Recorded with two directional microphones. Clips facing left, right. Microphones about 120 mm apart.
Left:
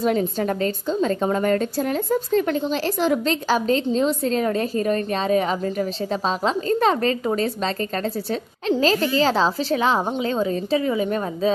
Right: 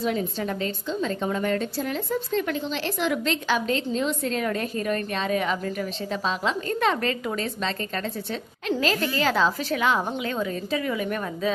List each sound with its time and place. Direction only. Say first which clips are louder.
0.0 s a woman's voice: left 5 dB; 45° left (ahead or behind); by 11.5 s 30° left (ahead or behind)